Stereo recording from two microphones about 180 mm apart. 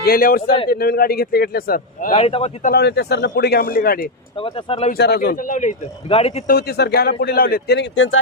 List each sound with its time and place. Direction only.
0.0 s speech: 55° left (ahead or behind)
2.1 s speech: 35° left (ahead or behind)
2.6 s speech: 65° left (ahead or behind)
4.4 s speech: 30° left (ahead or behind)
4.9 s a man's voice: 65° left (ahead or behind); by 6.4 s 35° left (ahead or behind)
6.5 s speech: 60° left (ahead or behind); by 8.2 s 90° left